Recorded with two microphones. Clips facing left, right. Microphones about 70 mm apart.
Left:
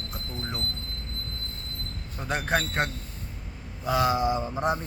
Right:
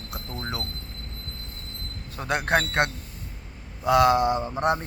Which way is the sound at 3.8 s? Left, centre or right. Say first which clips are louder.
Right 5 dB; right.